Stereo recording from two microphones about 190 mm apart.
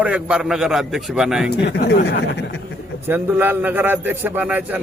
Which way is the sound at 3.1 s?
10° right (ahead or behind).